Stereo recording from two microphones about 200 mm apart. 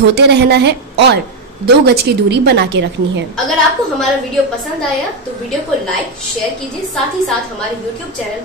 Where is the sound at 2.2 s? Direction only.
55° right (ahead or behind).